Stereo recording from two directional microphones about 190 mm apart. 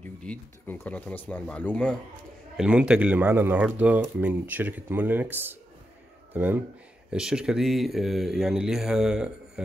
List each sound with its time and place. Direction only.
0.0 s speech: 5° left (ahead or behind)
2.5 s speech: 5° right (ahead or behind)